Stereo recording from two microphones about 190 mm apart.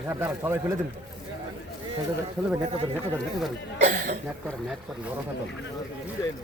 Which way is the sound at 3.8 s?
45° right (ahead or behind).